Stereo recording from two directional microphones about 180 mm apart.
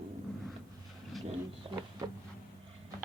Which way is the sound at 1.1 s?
Centre (ahead or behind).